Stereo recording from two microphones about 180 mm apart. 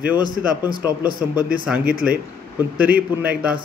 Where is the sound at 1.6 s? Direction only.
5° right (ahead or behind).